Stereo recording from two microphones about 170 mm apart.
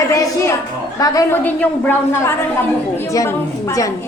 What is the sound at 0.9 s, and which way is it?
A woman's voice, 20° left (ahead or behind).